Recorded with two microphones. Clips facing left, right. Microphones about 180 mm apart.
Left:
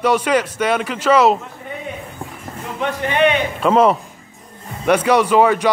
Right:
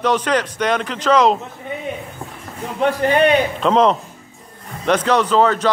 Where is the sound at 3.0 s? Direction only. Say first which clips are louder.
Right 1 dB; 35° right (ahead or behind).